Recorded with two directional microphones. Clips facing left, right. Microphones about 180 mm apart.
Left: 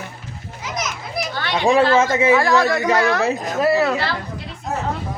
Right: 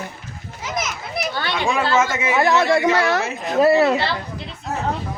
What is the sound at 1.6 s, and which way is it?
Speech, 35° left (ahead or behind).